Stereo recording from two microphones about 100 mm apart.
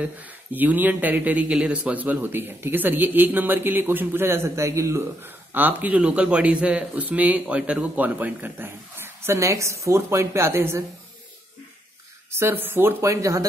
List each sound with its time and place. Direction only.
0.0 s a man's voice: 15° right (ahead or behind)
12.3 s a man's voice: 25° right (ahead or behind)